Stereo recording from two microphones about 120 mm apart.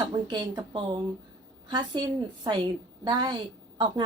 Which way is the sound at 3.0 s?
40° right (ahead or behind).